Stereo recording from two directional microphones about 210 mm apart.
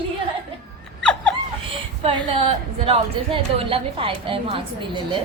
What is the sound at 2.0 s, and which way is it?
A woman's voice, 25° right (ahead or behind).